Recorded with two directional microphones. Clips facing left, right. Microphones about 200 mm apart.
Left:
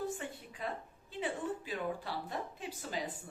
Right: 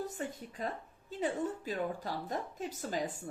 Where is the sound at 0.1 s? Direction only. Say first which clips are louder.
Right 2 dB; 40° right (ahead or behind).